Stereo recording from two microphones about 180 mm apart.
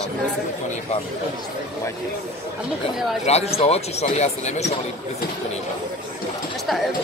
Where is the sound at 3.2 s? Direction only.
35° left (ahead or behind).